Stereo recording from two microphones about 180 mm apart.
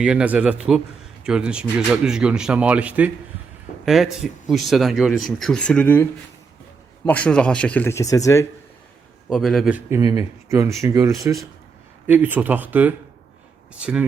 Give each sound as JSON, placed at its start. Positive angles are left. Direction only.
{"t": 0.0, "sound": "a man's voice", "side_deg": -5}
{"t": 9.3, "sound": "a man's voice", "side_deg": 0}
{"t": 10.0, "sound": "speech", "side_deg": -20}